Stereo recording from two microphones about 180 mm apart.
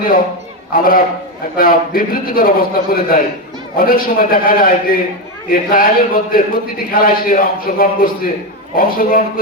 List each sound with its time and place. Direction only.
0.7 s a man's voice: 50° left (ahead or behind)